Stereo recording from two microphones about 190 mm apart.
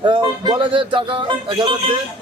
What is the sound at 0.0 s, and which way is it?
A man's voice, 25° right (ahead or behind).